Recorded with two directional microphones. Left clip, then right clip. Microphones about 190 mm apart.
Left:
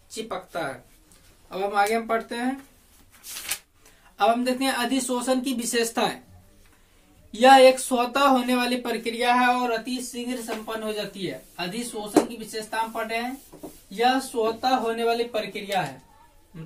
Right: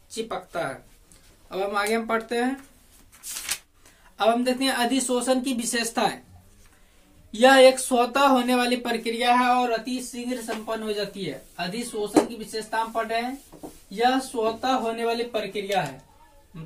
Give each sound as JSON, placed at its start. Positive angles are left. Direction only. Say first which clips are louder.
{"t": 0.1, "sound": "speech", "louder": "right 1 dB", "side_deg": -10}
{"t": 3.3, "sound": "a sound", "louder": "right 1 dB", "side_deg": -25}
{"t": 4.2, "sound": "speech", "louder": "even", "side_deg": -10}
{"t": 7.2, "sound": "speech", "louder": "left 1 dB", "side_deg": -10}
{"t": 14.3, "sound": "speech", "louder": "left 1 dB", "side_deg": -10}